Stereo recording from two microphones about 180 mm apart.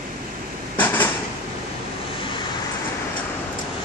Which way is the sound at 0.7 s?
10° left (ahead or behind).